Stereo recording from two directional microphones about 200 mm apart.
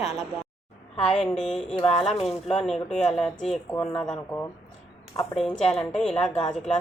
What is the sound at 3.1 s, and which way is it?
A woman's voice, centre (ahead or behind).